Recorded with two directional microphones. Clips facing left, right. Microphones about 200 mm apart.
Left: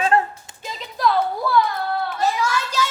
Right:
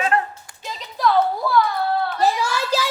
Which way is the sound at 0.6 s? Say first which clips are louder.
Even; centre (ahead or behind).